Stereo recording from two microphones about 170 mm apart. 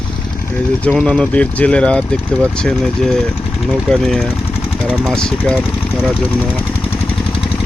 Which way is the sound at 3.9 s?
Centre (ahead or behind).